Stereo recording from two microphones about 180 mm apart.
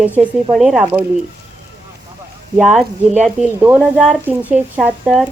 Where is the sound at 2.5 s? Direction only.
5° right (ahead or behind).